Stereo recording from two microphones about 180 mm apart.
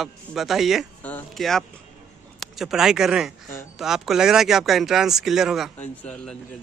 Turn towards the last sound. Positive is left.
turn(degrees=5)  # may be behind; listen again after turning